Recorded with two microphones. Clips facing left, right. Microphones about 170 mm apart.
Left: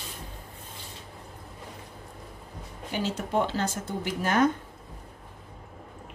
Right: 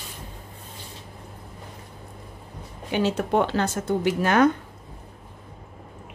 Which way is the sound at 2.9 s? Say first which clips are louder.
Right 6 dB; 65° right (ahead or behind).